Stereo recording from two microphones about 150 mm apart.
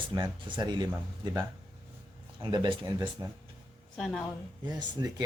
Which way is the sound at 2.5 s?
35° right (ahead or behind).